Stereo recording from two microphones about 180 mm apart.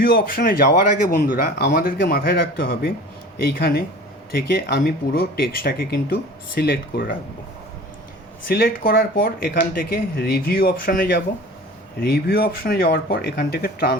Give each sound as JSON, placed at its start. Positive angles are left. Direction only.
{"t": 0.0, "sound": "speech", "side_deg": 55}
{"t": 8.4, "sound": "speech", "side_deg": 55}